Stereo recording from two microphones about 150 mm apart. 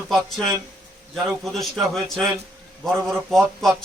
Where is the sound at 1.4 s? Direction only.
Centre (ahead or behind).